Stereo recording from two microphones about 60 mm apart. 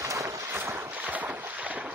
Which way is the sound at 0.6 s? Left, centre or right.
Right.